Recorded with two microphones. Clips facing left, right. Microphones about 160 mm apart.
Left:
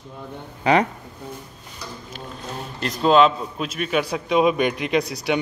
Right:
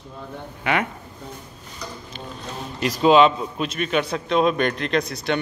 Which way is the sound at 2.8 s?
5° right (ahead or behind).